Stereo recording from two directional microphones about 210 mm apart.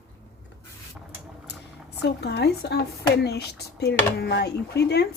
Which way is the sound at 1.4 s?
55° left (ahead or behind).